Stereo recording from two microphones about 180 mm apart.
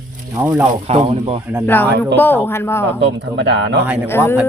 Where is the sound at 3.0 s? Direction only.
80° right.